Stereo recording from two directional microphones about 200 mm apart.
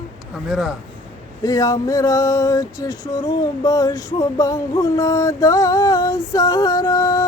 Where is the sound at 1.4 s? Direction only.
20° left (ahead or behind).